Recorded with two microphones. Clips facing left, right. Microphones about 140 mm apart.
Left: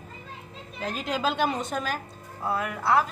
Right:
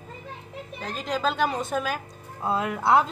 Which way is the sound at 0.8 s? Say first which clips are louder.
Right 1 dB; 5° left (ahead or behind).